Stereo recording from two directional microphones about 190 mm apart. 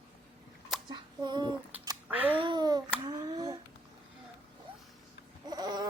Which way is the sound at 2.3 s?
25° right (ahead or behind).